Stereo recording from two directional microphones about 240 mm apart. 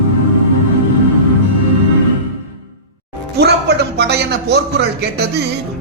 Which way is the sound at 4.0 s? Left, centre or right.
Right.